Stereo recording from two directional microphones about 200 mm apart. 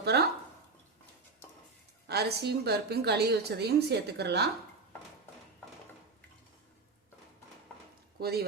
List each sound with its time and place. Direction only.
0.0 s a sound: 55° right (ahead or behind)
2.0 s a woman's voice: 55° right (ahead or behind)
8.2 s speech: 50° right (ahead or behind)